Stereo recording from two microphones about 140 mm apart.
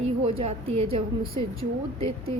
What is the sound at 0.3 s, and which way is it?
A woman's voice, 45° right (ahead or behind).